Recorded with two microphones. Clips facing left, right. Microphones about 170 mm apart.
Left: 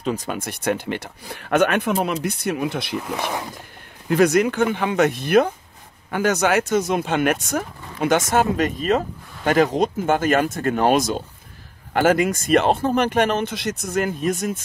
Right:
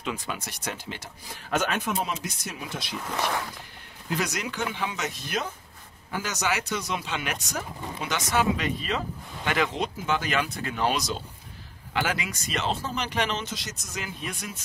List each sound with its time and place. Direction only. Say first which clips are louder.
0.0 s speech: left 8 dB; 40° left (ahead or behind); by 3.0 s 60° left (ahead or behind)
3.1 s speech: right 2 dB; 15° left (ahead or behind)
4.1 s speech: left 14 dB; 55° left (ahead or behind)